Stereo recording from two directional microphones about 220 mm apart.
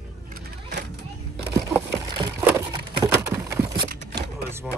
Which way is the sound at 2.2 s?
20° right (ahead or behind).